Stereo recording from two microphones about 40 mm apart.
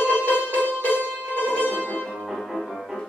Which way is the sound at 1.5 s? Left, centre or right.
Left.